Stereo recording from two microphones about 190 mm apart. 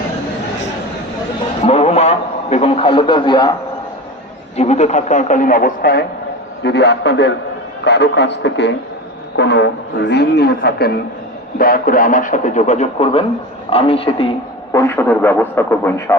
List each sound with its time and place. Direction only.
1.6 s a man's voice: 35° left (ahead or behind)
4.5 s speech: 35° left (ahead or behind); by 6.1 s 50° left (ahead or behind)
6.6 s speech: 65° left (ahead or behind); by 14.3 s 30° left (ahead or behind)
14.7 s a man's voice: 15° left (ahead or behind)